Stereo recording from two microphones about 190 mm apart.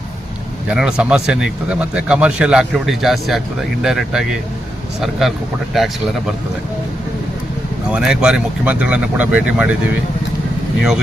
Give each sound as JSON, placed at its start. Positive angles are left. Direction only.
{"t": 0.7, "sound": "speech", "side_deg": -5}
{"t": 5.7, "sound": "speech", "side_deg": 0}
{"t": 7.9, "sound": "speech", "side_deg": -5}
{"t": 10.8, "sound": "speech", "side_deg": 0}